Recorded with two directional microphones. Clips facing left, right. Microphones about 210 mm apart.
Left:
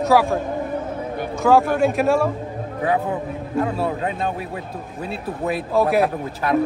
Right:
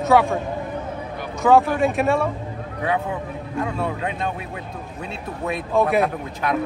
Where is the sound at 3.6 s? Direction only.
35° left (ahead or behind).